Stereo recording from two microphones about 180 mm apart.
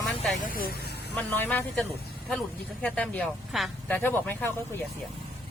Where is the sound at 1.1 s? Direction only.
10° left (ahead or behind).